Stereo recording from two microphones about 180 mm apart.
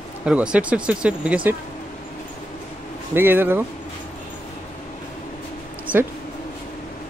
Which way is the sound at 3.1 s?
10° right (ahead or behind).